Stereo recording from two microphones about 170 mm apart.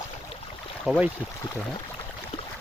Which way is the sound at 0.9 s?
Centre (ahead or behind).